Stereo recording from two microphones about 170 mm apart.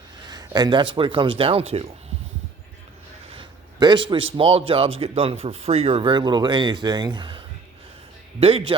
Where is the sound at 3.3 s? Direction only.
30° right (ahead or behind).